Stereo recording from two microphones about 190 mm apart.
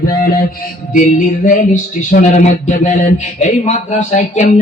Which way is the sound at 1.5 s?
45° left (ahead or behind).